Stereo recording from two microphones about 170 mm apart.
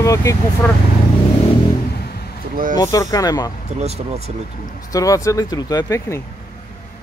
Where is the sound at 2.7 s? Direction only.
20° left (ahead or behind).